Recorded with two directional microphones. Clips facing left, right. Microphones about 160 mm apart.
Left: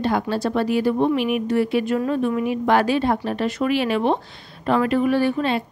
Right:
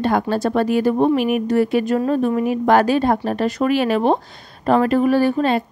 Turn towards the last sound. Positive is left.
turn(degrees=-45)  # may be behind; listen again after turning